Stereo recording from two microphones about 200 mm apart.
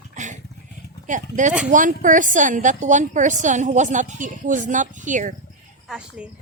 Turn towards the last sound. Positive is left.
turn(degrees=-5)  # may be behind; listen again after turning